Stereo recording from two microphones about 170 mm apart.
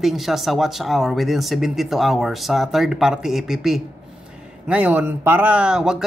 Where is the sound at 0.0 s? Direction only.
Centre (ahead or behind).